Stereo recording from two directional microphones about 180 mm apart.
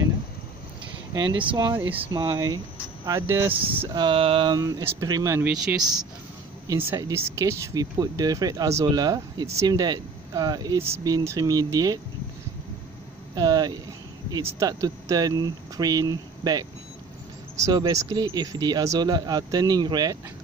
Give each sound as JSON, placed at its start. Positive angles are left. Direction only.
{"t": 1.4, "sound": "speech", "side_deg": -25}
{"t": 1.8, "sound": "speech", "side_deg": -10}
{"t": 2.1, "sound": "speech", "side_deg": -20}
{"t": 3.9, "sound": "speech", "side_deg": -25}
{"t": 6.9, "sound": "speech", "side_deg": -15}
{"t": 13.3, "sound": "speech", "side_deg": -20}